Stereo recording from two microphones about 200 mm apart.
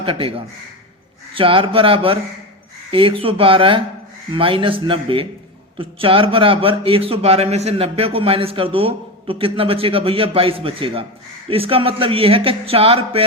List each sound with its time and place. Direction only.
0.0 s a man's voice: 25° right (ahead or behind)